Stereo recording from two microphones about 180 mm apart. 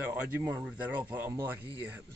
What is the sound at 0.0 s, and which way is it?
Speech, 10° right (ahead or behind).